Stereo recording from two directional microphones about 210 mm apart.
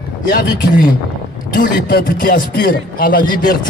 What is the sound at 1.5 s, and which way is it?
Speech, 45° left (ahead or behind).